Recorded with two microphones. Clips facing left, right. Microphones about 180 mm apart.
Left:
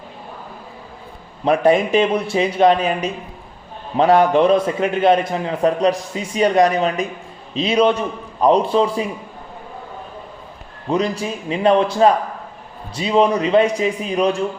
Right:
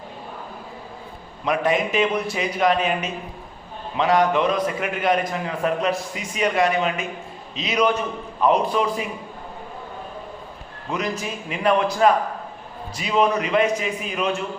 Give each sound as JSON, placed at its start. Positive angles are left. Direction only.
{"t": 1.5, "sound": "a man's voice", "side_deg": 30}
{"t": 10.8, "sound": "speech", "side_deg": 30}